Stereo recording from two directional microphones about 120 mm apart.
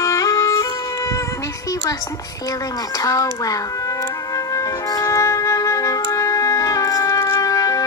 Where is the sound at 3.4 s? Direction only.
30° left (ahead or behind).